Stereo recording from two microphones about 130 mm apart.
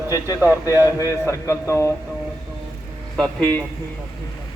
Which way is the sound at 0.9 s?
25° left (ahead or behind).